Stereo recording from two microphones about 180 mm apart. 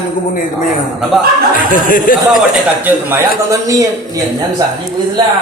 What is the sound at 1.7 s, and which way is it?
Speech, 50° left (ahead or behind).